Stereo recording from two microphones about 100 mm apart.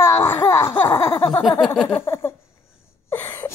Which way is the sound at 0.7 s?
25° left (ahead or behind).